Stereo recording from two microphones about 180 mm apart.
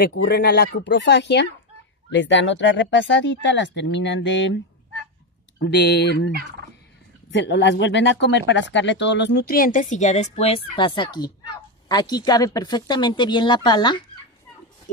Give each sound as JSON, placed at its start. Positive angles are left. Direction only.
{"t": 0.0, "sound": "speech", "side_deg": 70}
{"t": 5.6, "sound": "speech", "side_deg": 75}
{"t": 7.2, "sound": "speech", "side_deg": 85}